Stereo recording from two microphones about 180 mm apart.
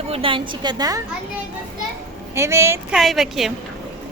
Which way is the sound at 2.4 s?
15° right (ahead or behind).